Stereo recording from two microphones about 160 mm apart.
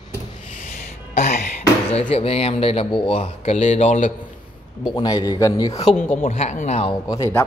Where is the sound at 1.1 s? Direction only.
45° left (ahead or behind).